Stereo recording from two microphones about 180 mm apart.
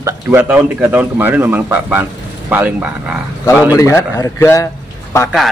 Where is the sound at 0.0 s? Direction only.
15° right (ahead or behind).